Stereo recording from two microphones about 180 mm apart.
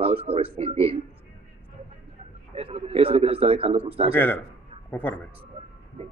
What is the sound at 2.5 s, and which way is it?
Speech, 35° right (ahead or behind).